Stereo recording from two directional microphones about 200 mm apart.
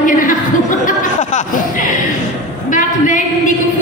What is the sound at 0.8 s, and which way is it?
Chuckle, 40° left (ahead or behind).